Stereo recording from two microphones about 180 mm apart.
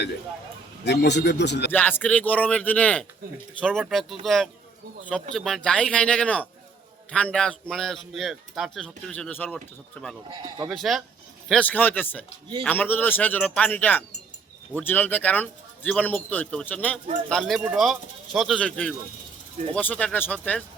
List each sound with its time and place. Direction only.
0.9 s a man's voice: 70° left (ahead or behind)
1.7 s a man's voice: 10° left (ahead or behind)
10.2 s speech: 25° right (ahead or behind)
10.7 s a man's voice: centre (ahead or behind)